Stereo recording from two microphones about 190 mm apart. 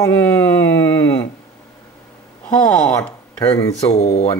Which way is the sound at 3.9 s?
35° left (ahead or behind).